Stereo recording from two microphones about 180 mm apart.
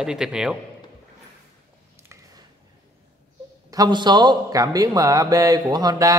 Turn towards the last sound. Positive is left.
turn(degrees=-20)  # may be behind; listen again after turning